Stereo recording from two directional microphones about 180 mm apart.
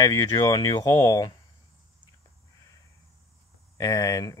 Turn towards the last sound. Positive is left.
turn(degrees=20)  # may be behind; listen again after turning